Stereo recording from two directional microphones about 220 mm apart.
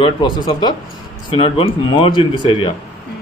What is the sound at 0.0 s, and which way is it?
Speech, 20° left (ahead or behind).